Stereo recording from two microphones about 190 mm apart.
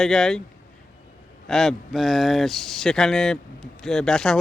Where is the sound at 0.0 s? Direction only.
5° left (ahead or behind).